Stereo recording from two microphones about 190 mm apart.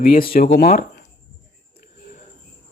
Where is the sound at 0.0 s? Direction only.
50° left (ahead or behind).